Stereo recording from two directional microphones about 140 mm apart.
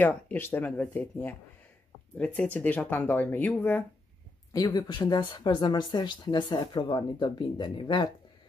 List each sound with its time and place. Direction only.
0.0 s speech: 10° left (ahead or behind)
4.6 s speech: 30° left (ahead or behind)